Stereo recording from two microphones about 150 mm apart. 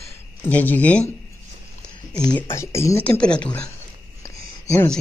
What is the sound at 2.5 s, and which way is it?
Speech, 20° left (ahead or behind).